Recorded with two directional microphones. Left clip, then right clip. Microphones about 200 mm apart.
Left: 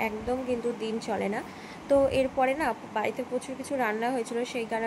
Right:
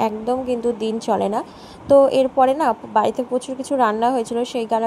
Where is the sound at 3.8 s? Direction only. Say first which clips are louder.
Right 11 dB; 30° right (ahead or behind).